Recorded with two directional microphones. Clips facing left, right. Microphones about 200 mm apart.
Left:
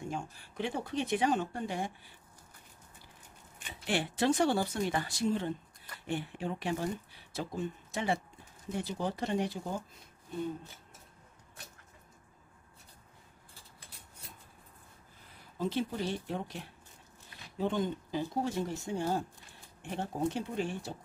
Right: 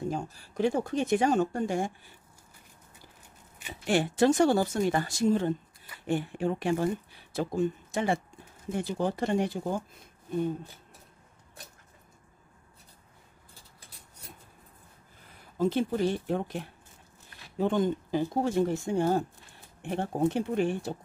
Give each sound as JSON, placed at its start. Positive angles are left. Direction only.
{"t": 0.0, "sound": "speech", "side_deg": -40}
{"t": 3.8, "sound": "speech", "side_deg": -45}
{"t": 15.5, "sound": "speech", "side_deg": -50}